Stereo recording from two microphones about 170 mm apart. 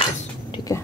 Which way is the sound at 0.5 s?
20° left (ahead or behind).